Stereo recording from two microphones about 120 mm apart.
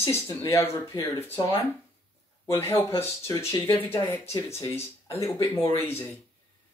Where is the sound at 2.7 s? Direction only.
20° left (ahead or behind).